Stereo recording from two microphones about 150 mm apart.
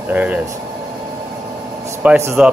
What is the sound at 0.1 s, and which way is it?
Speech, 10° right (ahead or behind).